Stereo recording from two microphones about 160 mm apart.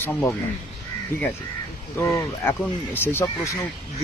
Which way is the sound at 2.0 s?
15° left (ahead or behind).